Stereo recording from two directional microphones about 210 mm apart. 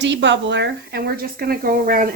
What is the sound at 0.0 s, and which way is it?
Speech, 55° right (ahead or behind).